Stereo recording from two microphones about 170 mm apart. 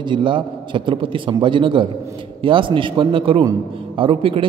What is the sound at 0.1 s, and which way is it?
A man's voice, 30° right (ahead or behind).